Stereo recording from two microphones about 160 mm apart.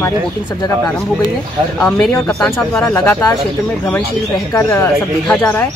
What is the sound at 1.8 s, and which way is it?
Speech, 5° left (ahead or behind).